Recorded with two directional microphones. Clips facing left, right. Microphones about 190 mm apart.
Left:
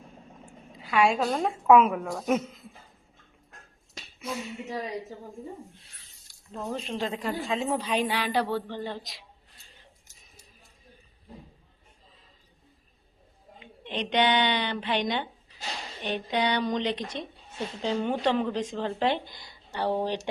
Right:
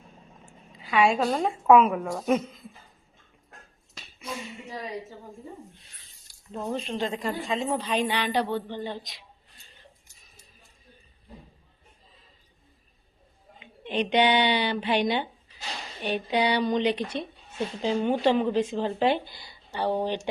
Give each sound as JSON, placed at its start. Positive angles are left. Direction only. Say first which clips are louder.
{"t": 0.4, "sound": "a woman's voice", "louder": "left 2 dB", "side_deg": 0}
{"t": 4.2, "sound": "a sound", "louder": "left 2 dB", "side_deg": 10}
{"t": 6.6, "sound": "a woman's voice", "louder": "right 2 dB", "side_deg": 0}
{"t": 8.4, "sound": "speech", "louder": "even", "side_deg": -20}
{"t": 8.9, "sound": "a woman's voice", "louder": "right 1 dB", "side_deg": 0}
{"t": 13.6, "sound": "speech", "louder": "right 5 dB", "side_deg": -10}